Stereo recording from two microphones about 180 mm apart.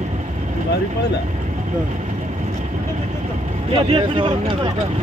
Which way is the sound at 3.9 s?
30° right (ahead or behind).